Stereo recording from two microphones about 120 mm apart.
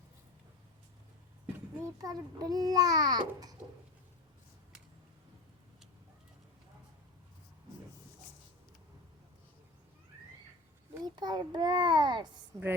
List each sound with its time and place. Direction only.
1.8 s a child's voice: 30° right (ahead or behind)
11.0 s a child's voice: 35° right (ahead or behind)